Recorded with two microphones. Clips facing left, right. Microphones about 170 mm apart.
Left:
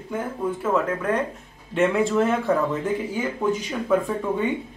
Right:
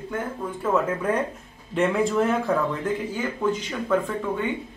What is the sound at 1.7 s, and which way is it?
Speech, centre (ahead or behind).